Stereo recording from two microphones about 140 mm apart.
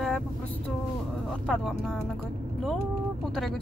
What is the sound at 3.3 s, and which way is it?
Speech, centre (ahead or behind).